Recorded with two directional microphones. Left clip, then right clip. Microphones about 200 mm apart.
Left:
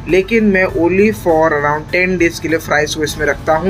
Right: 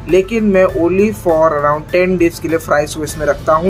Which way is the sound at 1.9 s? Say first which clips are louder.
Right 1 dB; 15° right (ahead or behind).